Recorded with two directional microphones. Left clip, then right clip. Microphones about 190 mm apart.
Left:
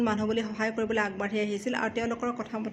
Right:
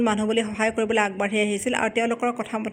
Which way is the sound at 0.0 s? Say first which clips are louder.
Right 6 dB; 30° right (ahead or behind).